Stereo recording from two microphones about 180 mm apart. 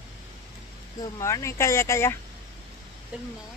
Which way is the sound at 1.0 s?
15° left (ahead or behind).